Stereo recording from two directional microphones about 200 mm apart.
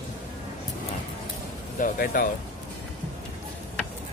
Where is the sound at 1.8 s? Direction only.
45° left (ahead or behind).